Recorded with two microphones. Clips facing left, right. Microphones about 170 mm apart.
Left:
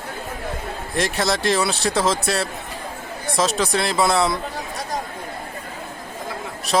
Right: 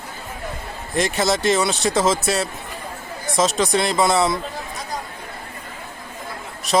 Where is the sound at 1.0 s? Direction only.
Centre (ahead or behind).